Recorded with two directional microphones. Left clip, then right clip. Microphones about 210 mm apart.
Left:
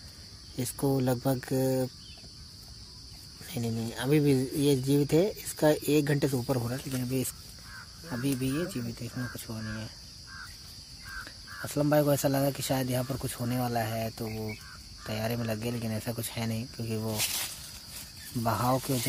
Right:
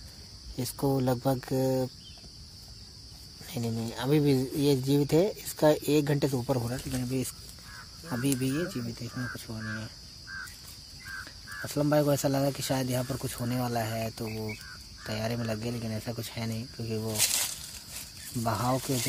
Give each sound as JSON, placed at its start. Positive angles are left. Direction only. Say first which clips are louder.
{"t": 0.6, "sound": "speech", "louder": "even", "side_deg": 0}
{"t": 3.4, "sound": "speech", "louder": "even", "side_deg": 0}
{"t": 8.1, "sound": "speech", "louder": "right 2 dB", "side_deg": -15}
{"t": 8.5, "sound": "speech", "louder": "right 1 dB", "side_deg": 0}
{"t": 11.6, "sound": "speech", "louder": "even", "side_deg": 5}
{"t": 17.2, "sound": "speech", "louder": "right 7 dB", "side_deg": -40}
{"t": 18.3, "sound": "speech", "louder": "left 1 dB", "side_deg": 5}